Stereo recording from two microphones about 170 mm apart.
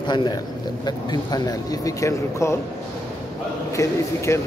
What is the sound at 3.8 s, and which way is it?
Speech, 15° left (ahead or behind).